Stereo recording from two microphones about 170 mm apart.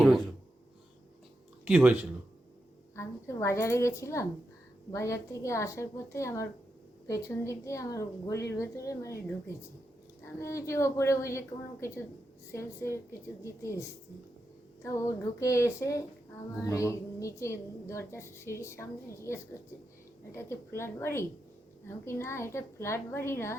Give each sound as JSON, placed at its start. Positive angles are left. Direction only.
{"t": 1.6, "sound": "speech", "side_deg": -5}
{"t": 2.9, "sound": "a woman's voice", "side_deg": 15}
{"t": 10.3, "sound": "a woman's voice", "side_deg": 15}